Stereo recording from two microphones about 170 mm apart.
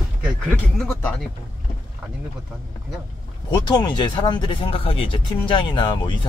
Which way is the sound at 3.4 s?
25° left (ahead or behind).